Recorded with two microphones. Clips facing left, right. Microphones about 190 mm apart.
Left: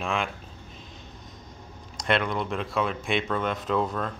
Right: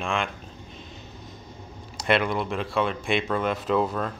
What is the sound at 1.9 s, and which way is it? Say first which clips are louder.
Speech: right 2 dB; 5° right (ahead or behind).